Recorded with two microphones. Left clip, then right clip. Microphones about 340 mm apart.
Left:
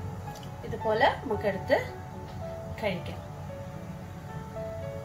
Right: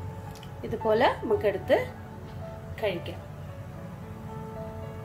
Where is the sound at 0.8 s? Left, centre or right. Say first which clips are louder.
Right 1 dB; right.